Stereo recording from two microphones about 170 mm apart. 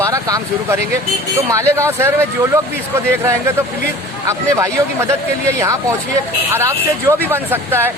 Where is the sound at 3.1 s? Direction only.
15° right (ahead or behind).